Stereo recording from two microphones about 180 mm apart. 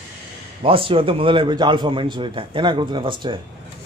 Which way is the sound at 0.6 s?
30° right (ahead or behind).